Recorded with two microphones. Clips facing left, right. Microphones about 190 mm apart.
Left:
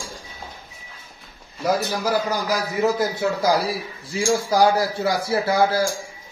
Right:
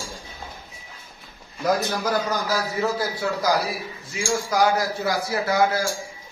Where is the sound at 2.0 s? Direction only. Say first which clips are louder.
Left 3 dB; 10° left (ahead or behind).